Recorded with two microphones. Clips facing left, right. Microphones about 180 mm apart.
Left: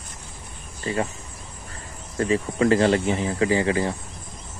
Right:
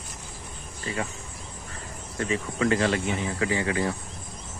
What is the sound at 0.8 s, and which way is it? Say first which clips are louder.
Speech: left 6 dB; 30° left (ahead or behind).